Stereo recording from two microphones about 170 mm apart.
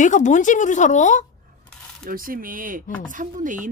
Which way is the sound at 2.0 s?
55° right (ahead or behind).